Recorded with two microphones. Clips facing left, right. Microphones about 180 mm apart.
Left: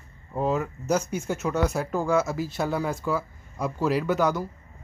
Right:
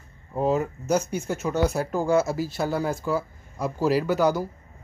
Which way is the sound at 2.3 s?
5° right (ahead or behind).